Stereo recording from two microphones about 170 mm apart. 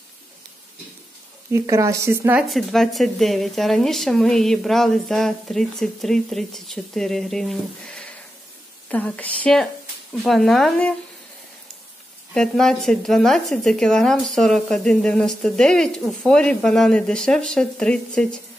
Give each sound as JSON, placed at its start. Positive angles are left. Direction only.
{"t": 1.5, "sound": "speech", "side_deg": -15}
{"t": 2.4, "sound": "a woman's voice", "side_deg": 0}
{"t": 12.4, "sound": "a woman's voice", "side_deg": 5}